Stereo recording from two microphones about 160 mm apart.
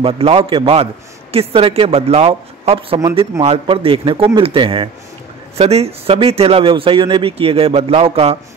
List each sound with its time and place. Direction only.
0.0 s speech: 35° right (ahead or behind)